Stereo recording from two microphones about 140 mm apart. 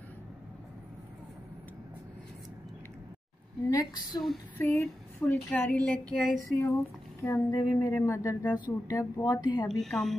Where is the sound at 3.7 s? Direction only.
25° left (ahead or behind); by 7.4 s 10° left (ahead or behind).